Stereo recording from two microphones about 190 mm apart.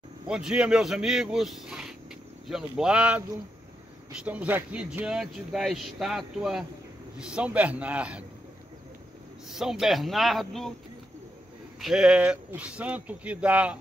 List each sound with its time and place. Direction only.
0.3 s speech: 5° right (ahead or behind)
9.5 s speech: centre (ahead or behind)
11.8 s speech: 5° right (ahead or behind)